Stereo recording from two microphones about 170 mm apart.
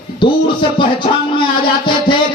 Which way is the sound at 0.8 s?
30° left (ahead or behind).